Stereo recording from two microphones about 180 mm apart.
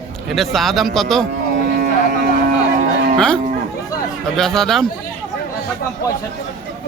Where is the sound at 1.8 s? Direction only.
65° right (ahead or behind).